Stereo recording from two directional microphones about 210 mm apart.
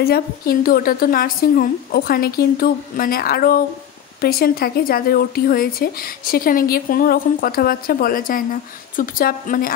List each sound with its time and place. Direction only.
0.0 s speech: 45° left (ahead or behind)